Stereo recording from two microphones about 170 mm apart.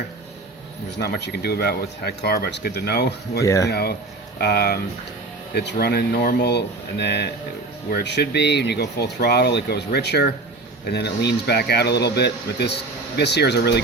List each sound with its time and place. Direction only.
0.9 s speech: 75° left (ahead or behind)
3.4 s speech: 20° left (ahead or behind)
3.7 s speech: 70° left (ahead or behind)